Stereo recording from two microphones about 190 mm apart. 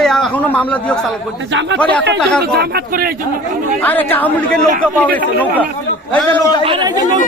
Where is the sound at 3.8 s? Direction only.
10° left (ahead or behind).